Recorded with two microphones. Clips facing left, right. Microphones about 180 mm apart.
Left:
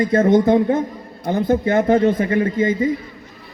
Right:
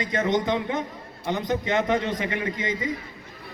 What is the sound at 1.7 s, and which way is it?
Speech, 45° left (ahead or behind).